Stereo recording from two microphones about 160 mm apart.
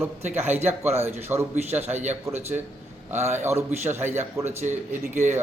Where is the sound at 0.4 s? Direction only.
10° right (ahead or behind).